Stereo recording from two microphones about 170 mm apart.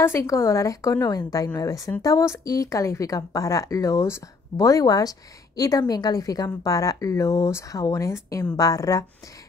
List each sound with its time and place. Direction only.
0.0 s a woman's voice: 15° left (ahead or behind)